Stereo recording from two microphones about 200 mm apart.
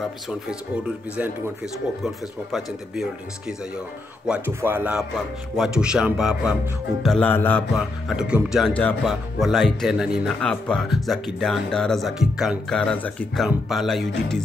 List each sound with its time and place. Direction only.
0.3 s speech: 5° right (ahead or behind)